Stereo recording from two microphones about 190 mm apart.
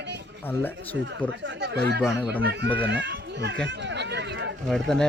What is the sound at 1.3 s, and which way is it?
Speech, 70° right (ahead or behind).